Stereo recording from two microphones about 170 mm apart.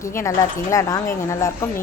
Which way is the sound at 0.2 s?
15° left (ahead or behind).